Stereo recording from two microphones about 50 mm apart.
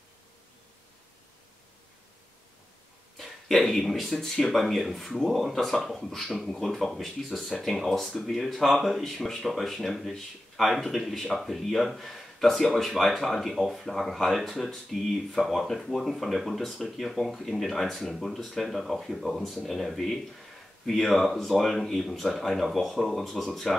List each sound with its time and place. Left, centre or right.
3.2 s speech: centre